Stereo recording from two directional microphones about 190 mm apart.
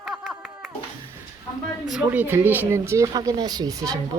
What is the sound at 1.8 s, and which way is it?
Speech, 5° right (ahead or behind).